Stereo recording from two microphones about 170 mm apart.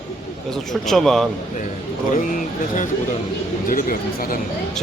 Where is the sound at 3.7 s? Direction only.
55° left (ahead or behind).